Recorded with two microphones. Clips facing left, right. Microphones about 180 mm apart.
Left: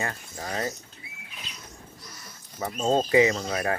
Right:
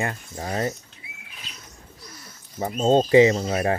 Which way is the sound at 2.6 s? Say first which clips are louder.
Right 5 dB; 25° right (ahead or behind).